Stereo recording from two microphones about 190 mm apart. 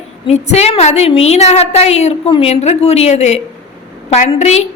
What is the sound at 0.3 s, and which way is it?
A woman's voice, 35° left (ahead or behind).